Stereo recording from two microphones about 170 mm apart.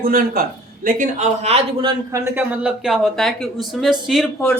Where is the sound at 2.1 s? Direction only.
15° right (ahead or behind).